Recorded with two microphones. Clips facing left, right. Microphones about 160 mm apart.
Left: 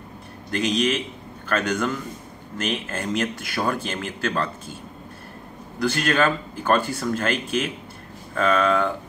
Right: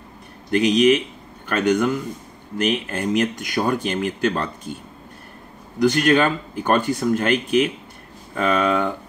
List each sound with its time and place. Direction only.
0.5 s speech: 20° right (ahead or behind)
5.8 s speech: 20° right (ahead or behind)